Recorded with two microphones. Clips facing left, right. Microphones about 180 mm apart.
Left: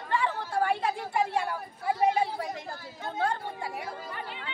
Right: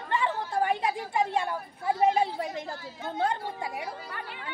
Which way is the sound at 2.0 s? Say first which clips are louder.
Right 2 dB; 25° right (ahead or behind).